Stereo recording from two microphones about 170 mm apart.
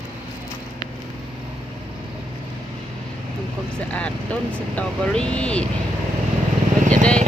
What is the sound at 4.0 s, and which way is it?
Speech, 5° left (ahead or behind).